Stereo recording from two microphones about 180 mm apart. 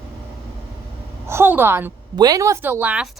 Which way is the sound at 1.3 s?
15° right (ahead or behind).